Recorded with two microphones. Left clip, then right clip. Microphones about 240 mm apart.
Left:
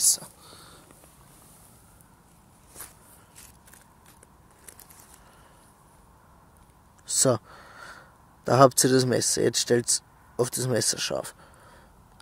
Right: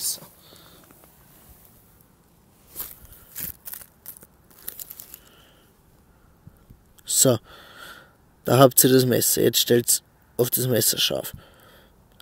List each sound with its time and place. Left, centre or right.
0.0 s whispering: centre
7.1 s speech: right